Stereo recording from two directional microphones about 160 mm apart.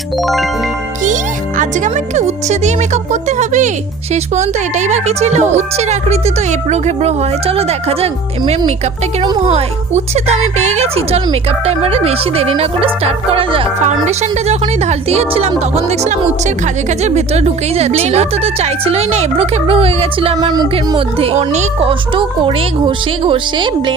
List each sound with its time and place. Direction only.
0.2 s music: centre (ahead or behind)
1.0 s speech: 50° right (ahead or behind); by 13.7 s 35° right (ahead or behind)
13.8 s speech: 45° right (ahead or behind); by 23.9 s 30° right (ahead or behind)